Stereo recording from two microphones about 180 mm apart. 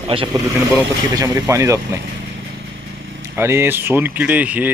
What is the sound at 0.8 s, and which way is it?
Speech, 15° right (ahead or behind).